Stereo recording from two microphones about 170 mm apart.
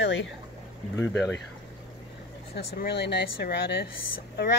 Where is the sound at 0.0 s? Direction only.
90° left.